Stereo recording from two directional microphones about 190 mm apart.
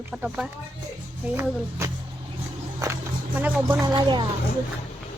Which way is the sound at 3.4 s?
10° right (ahead or behind).